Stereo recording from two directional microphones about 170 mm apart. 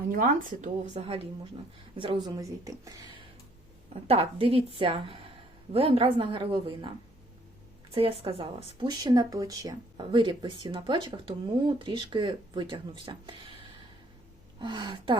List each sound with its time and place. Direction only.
0.1 s a woman's voice: 55° right (ahead or behind); by 3.0 s 20° right (ahead or behind)
4.0 s a woman's voice: 35° right (ahead or behind)
7.9 s speech: 35° right (ahead or behind)